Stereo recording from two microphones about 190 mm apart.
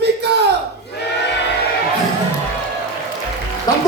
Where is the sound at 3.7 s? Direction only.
20° left (ahead or behind).